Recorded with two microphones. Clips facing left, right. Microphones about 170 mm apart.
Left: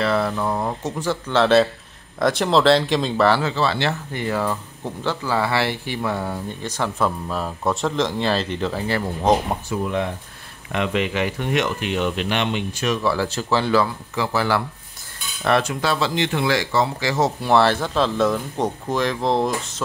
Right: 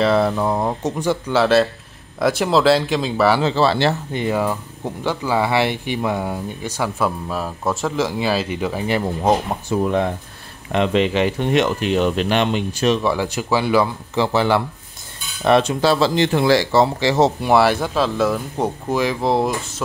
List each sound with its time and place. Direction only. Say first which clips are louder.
0.0 s speech: right 4 dB; 20° right (ahead or behind); by 3.3 s 5° right (ahead or behind)
3.5 s speech: right 5 dB; 35° right (ahead or behind)
4.1 s speech: right 3 dB; 20° right (ahead or behind)
9.7 s speech: right 7 dB; 30° right (ahead or behind)
12.9 s speech: right 2 dB; 20° right (ahead or behind)
14.1 s speech: right 4 dB; 25° right (ahead or behind)
17.4 s speech: right 2 dB; 10° right (ahead or behind)